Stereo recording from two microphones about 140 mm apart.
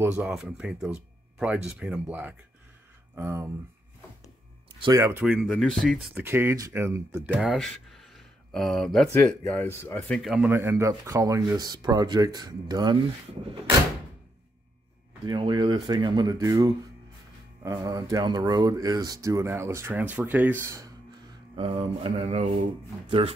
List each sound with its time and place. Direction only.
0.0 s speech: 10° right (ahead or behind)
4.7 s speech: 35° right (ahead or behind)
5.2 s speech: 5° right (ahead or behind)
6.1 s speech: 15° right (ahead or behind)
7.3 s speech: centre (ahead or behind)
9.7 s speech: 20° left (ahead or behind)
10.0 s speech: centre (ahead or behind)
10.4 s speech: 15° right (ahead or behind)
15.2 s speech: 35° right (ahead or behind); by 20.8 s 15° right (ahead or behind)
21.5 s speech: 40° right (ahead or behind)